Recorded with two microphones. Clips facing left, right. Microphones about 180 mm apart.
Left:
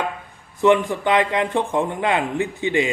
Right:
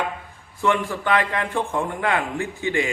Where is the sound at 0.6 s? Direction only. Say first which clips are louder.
Left 6 dB; 20° left (ahead or behind).